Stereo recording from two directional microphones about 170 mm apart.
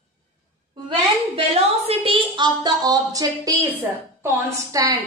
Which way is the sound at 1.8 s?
30° right (ahead or behind).